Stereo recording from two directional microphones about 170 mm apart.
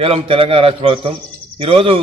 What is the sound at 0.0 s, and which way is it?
A man's voice, 30° right (ahead or behind).